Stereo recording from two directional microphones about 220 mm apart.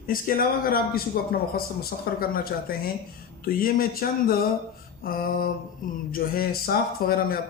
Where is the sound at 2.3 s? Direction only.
40° left (ahead or behind).